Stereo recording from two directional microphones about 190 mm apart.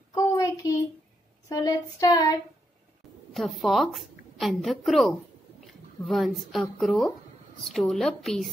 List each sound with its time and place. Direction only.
0.1 s a sound: 20° left (ahead or behind)
1.5 s child singing: 20° left (ahead or behind)
3.3 s a woman's voice: centre (ahead or behind)